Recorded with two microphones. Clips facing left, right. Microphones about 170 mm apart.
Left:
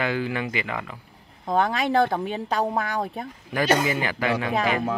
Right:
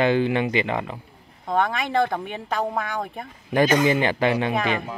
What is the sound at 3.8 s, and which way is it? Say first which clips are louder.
Speech: right 5 dB; 25° right (ahead or behind).